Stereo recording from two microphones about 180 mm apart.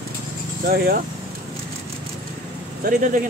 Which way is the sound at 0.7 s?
55° right (ahead or behind).